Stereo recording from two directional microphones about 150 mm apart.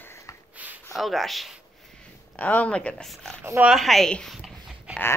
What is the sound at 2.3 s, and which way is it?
Speech, 10° left (ahead or behind).